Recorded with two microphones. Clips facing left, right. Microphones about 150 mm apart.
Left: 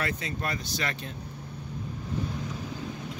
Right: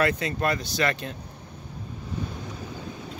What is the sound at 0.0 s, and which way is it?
Speech, 70° right (ahead or behind).